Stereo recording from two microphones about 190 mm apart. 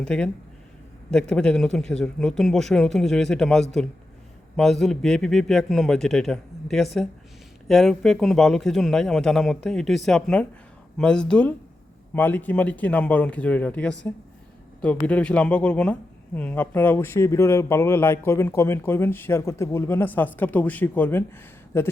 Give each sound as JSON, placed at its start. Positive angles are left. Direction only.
{"t": 0.0, "sound": "speech", "side_deg": 5}